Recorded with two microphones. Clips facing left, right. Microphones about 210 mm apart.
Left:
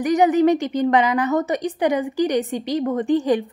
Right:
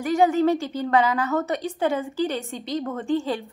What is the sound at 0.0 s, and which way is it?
A woman's voice, 20° left (ahead or behind).